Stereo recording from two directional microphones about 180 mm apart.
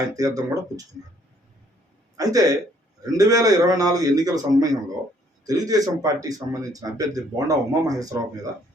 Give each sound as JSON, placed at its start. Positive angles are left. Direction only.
{"t": 0.0, "sound": "speech", "side_deg": -20}
{"t": 2.1, "sound": "speech", "side_deg": -20}